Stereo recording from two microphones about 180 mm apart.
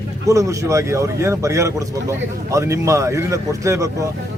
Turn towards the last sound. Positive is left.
turn(degrees=-15)  # may be behind; listen again after turning